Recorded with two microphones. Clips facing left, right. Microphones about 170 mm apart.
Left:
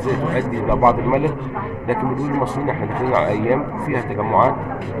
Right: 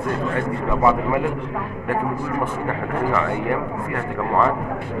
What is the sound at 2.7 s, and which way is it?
A man's voice, 25° left (ahead or behind).